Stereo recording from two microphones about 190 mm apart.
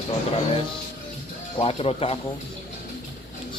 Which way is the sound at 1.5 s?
30° left (ahead or behind).